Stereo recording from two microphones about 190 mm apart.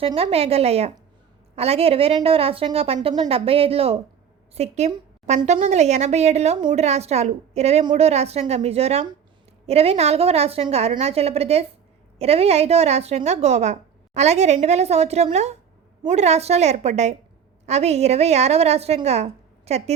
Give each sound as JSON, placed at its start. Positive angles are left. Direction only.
{"t": 0.0, "sound": "a woman's voice", "side_deg": -30}